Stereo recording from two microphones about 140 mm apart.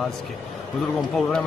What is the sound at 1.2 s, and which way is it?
Speech, 5° left (ahead or behind).